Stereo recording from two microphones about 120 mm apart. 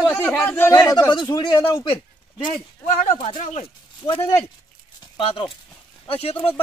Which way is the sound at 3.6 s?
50° left (ahead or behind).